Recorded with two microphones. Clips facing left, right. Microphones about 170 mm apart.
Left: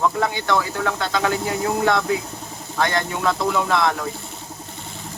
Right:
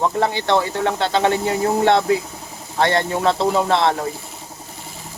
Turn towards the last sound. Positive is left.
turn(degrees=-30)  # may be behind; listen again after turning